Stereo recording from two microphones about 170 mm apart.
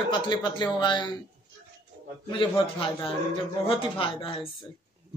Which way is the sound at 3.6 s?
30° left (ahead or behind).